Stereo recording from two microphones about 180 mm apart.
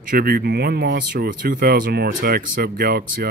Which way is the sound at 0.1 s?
55° right (ahead or behind).